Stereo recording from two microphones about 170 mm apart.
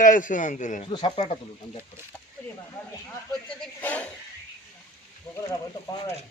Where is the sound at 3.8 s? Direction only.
10° left (ahead or behind).